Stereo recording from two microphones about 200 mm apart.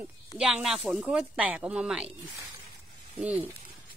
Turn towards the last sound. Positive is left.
turn(degrees=-5)  # may be behind; listen again after turning